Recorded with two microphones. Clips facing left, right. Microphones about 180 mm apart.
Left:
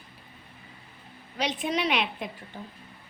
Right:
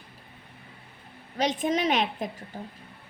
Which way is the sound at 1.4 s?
45° right (ahead or behind).